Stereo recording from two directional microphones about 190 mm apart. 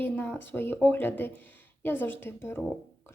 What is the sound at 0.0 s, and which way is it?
A woman's voice, 10° left (ahead or behind).